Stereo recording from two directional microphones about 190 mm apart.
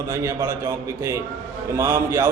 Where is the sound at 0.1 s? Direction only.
15° right (ahead or behind).